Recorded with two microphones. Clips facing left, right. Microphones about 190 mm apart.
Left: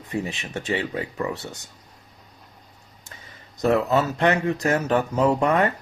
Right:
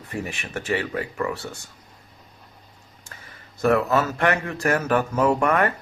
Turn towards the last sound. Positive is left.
turn(degrees=20)  # may be behind; listen again after turning